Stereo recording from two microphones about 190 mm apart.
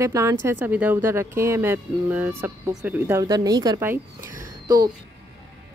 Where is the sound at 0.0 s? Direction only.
15° right (ahead or behind).